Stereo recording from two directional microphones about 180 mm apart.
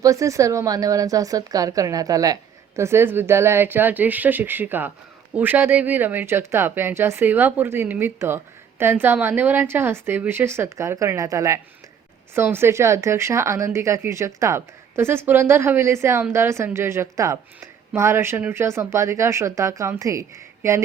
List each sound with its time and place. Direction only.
0.0 s a woman's voice: 20° right (ahead or behind)